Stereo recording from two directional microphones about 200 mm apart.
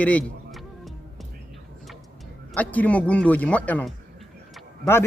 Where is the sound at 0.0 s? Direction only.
5° left (ahead or behind).